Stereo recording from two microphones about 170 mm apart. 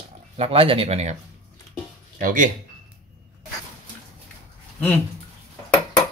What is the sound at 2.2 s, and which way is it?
Speech, 50° right (ahead or behind).